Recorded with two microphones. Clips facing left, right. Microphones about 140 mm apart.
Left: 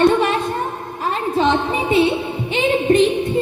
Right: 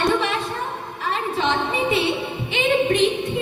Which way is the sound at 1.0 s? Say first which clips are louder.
Left 5 dB; 40° left (ahead or behind).